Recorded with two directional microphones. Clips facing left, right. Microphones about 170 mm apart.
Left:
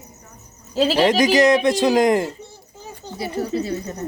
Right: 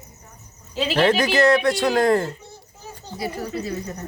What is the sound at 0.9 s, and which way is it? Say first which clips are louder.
Speech: left 1 dB; 15° left (ahead or behind).